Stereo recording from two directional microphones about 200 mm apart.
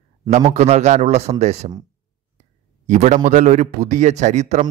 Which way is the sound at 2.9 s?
35° right (ahead or behind).